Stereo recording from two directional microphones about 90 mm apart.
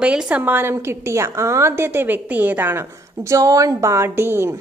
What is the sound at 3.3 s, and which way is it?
A woman's voice, 40° right (ahead or behind).